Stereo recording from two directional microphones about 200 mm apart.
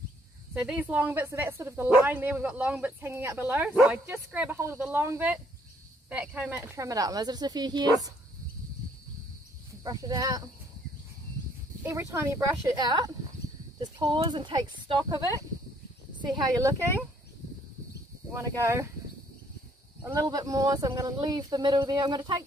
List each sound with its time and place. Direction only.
0.6 s speech: 5° right (ahead or behind)
9.8 s speech: 20° right (ahead or behind)
11.8 s speech: 15° right (ahead or behind)
18.3 s speech: 15° right (ahead or behind)
20.0 s speech: 15° right (ahead or behind)